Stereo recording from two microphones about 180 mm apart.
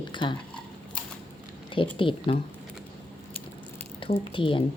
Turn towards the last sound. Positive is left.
turn(degrees=30)  # may be behind; listen again after turning